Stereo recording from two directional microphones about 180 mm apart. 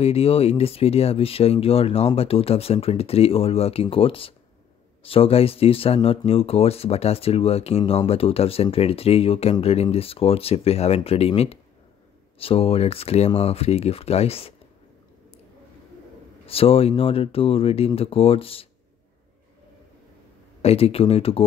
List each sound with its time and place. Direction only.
0.0 s speech: 35° left (ahead or behind)
16.4 s speech: 30° left (ahead or behind)
20.6 s speech: 35° left (ahead or behind)